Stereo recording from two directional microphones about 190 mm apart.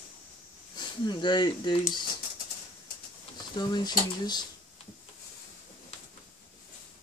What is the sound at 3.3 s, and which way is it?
Speech, 20° left (ahead or behind).